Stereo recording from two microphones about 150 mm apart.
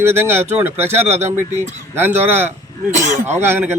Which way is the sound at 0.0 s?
15° right (ahead or behind).